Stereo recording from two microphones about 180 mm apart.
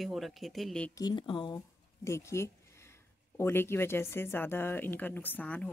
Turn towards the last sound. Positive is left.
turn(degrees=10)  # may be behind; listen again after turning